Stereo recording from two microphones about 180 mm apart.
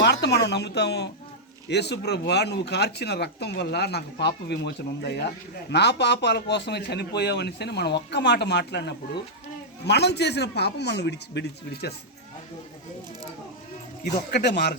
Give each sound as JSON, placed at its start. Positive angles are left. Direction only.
{"t": 0.0, "sound": "a woman's voice", "side_deg": 70}
{"t": 14.3, "sound": "speech", "side_deg": 65}